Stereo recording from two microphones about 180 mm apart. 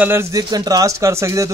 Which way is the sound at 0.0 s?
15° right (ahead or behind).